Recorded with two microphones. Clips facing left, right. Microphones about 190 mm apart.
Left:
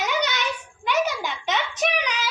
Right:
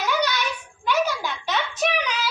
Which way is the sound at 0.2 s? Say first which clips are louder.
Right 1 dB; 20° left (ahead or behind).